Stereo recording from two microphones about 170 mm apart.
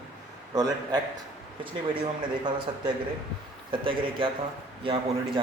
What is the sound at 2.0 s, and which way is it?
A man's voice, 25° right (ahead or behind).